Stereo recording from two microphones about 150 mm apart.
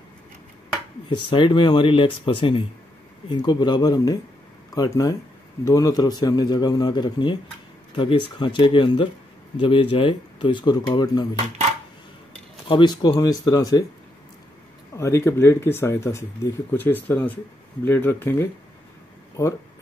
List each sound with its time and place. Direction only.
1.0 s a man's voice: 30° left (ahead or behind)
12.6 s a man's voice: 30° left (ahead or behind)
15.0 s a man's voice: 15° left (ahead or behind)